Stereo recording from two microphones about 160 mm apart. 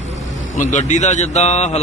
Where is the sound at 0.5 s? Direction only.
50° left (ahead or behind).